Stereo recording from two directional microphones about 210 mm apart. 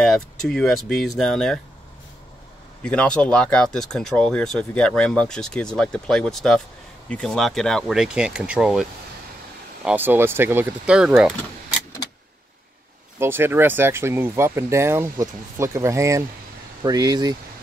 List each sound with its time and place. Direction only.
0.0 s speech: centre (ahead or behind)
2.8 s speech: 5° left (ahead or behind)
9.8 s speech: 10° right (ahead or behind)
13.2 s speech: 10° right (ahead or behind)